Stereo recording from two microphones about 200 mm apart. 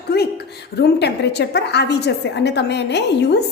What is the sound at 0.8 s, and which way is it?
A woman's voice, 55° left (ahead or behind).